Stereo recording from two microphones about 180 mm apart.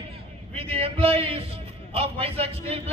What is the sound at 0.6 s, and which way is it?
A man's voice, 35° right (ahead or behind).